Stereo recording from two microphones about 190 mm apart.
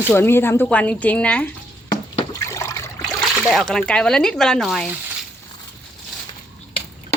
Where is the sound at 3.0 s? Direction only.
Centre (ahead or behind).